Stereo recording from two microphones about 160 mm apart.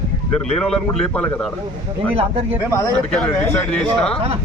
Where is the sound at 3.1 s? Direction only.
5° left (ahead or behind).